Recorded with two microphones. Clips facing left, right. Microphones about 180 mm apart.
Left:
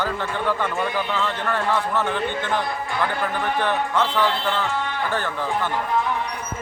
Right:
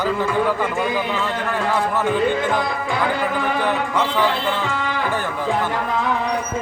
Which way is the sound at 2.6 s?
90° right.